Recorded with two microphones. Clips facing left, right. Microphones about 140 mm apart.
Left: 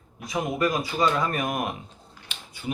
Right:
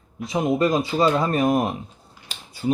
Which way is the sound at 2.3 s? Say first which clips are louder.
Right 10 dB; 35° right (ahead or behind).